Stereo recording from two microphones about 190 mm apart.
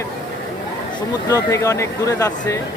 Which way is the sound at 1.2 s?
15° left (ahead or behind).